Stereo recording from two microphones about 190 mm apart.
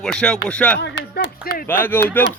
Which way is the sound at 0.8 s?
60° left (ahead or behind).